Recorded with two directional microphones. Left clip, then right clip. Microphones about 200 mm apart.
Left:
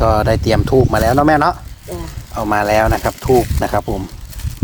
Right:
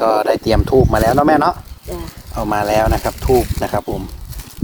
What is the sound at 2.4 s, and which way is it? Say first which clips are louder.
Speech: left 2 dB; 15° left (ahead or behind).